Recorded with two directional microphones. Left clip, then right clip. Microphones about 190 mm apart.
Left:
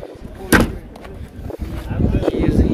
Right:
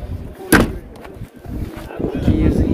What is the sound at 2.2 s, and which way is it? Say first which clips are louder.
Vehicle: left 1 dB; 10° right (ahead or behind).